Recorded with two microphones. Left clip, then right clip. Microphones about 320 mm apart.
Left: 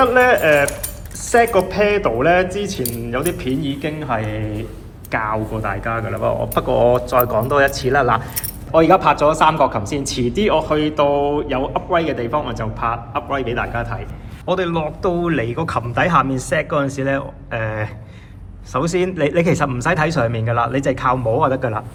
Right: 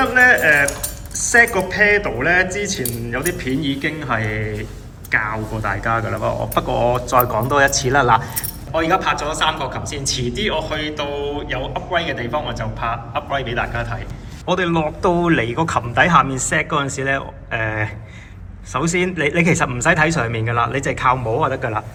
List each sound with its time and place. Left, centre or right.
0.0 s a man's voice: centre
8.7 s a man's voice: centre